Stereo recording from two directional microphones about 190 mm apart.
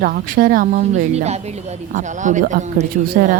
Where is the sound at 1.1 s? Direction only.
35° right (ahead or behind).